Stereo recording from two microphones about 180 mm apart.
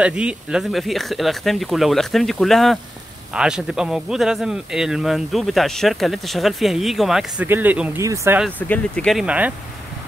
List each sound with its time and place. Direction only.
0.0 s speech: 5° right (ahead or behind)
8.5 s speech: 10° left (ahead or behind); by 9.5 s 5° right (ahead or behind)